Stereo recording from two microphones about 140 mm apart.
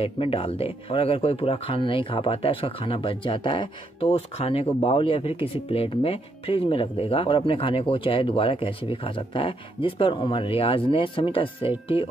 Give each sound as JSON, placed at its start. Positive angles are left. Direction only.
{"t": 0.0, "sound": "speech", "side_deg": 40}